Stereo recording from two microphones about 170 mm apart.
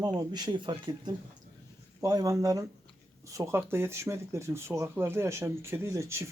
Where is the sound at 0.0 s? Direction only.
25° right (ahead or behind).